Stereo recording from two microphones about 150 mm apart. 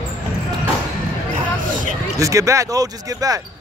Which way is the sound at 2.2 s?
20° right (ahead or behind).